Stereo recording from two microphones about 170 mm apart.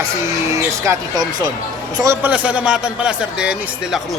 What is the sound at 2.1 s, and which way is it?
A man's voice, 10° right (ahead or behind).